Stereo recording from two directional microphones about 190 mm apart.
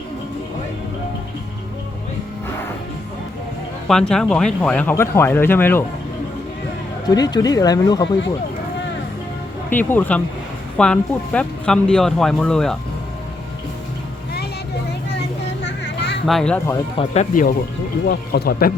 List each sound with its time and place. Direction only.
3.8 s speech: 5° left (ahead or behind)
7.1 s speech: 20° left (ahead or behind)
9.6 s speech: 10° left (ahead or behind)
15.6 s a sound: 65° left (ahead or behind)
16.2 s speech: centre (ahead or behind)
17.0 s speech: 40° left (ahead or behind)
18.1 s speech: 55° left (ahead or behind)